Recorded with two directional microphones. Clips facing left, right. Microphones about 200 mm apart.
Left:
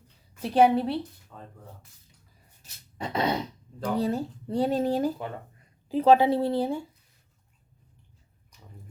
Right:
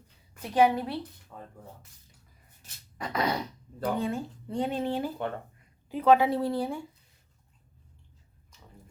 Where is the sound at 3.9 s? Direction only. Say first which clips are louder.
Left 5 dB; 35° left (ahead or behind).